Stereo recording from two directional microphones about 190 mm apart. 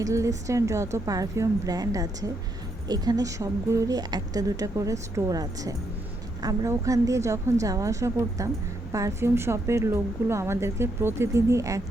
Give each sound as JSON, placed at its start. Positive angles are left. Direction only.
{"t": 0.0, "sound": "a woman's voice", "side_deg": -15}